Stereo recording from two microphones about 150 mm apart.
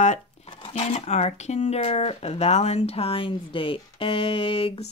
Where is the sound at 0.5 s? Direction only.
35° left (ahead or behind).